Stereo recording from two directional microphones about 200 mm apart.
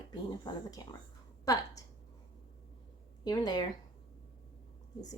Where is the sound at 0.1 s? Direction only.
20° left (ahead or behind).